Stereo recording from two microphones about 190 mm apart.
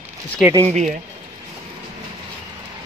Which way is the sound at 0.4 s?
15° right (ahead or behind).